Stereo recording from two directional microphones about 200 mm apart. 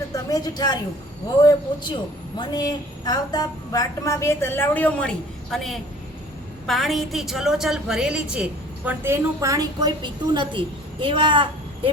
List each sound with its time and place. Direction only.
0.1 s a man's voice: 20° left (ahead or behind); by 11.9 s 25° right (ahead or behind)